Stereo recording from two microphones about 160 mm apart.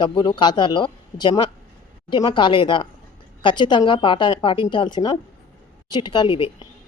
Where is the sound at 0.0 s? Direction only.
30° left (ahead or behind).